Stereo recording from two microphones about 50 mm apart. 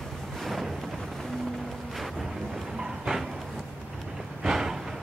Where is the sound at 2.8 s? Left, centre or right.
Centre.